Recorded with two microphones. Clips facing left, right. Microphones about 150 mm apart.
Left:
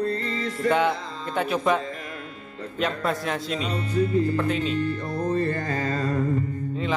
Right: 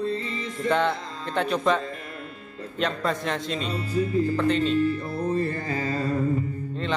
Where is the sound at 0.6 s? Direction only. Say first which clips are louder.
Left 1 dB; 5° left (ahead or behind).